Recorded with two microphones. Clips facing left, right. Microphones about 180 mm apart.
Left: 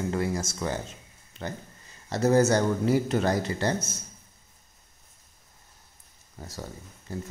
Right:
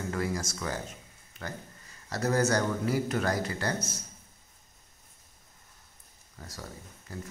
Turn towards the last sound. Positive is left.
turn(degrees=25)  # may be behind; listen again after turning